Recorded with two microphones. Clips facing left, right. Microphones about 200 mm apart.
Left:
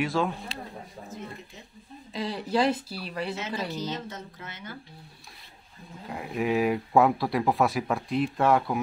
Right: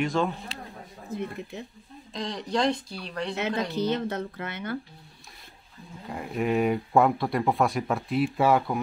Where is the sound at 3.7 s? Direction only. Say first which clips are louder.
Right 7 dB; 60° right (ahead or behind).